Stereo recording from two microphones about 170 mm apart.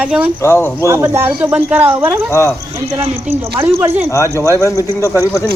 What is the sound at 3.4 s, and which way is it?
Speech, 15° right (ahead or behind).